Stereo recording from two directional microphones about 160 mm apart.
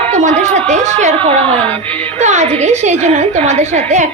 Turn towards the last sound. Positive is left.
turn(degrees=-45)  # may be behind; listen again after turning